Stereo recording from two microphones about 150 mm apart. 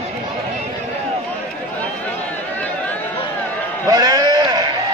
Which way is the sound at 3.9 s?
25° right (ahead or behind).